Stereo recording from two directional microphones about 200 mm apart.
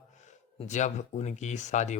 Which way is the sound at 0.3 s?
35° left (ahead or behind).